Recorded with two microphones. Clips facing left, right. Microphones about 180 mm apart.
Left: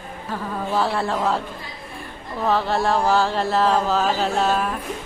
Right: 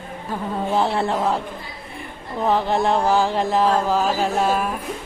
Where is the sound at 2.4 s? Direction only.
15° right (ahead or behind).